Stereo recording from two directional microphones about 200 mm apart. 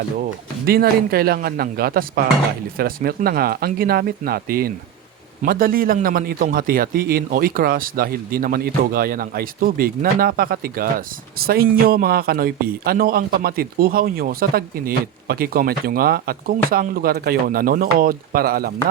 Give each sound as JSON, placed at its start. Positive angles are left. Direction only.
{"t": 0.6, "sound": "a man's voice", "side_deg": -50}